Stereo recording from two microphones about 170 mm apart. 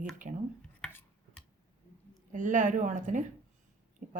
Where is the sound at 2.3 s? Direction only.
50° right (ahead or behind).